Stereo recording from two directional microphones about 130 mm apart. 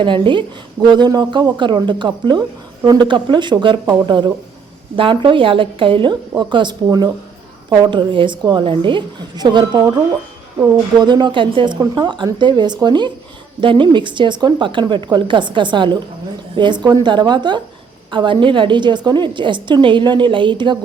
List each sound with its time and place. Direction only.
0.0 s speech: 40° right (ahead or behind)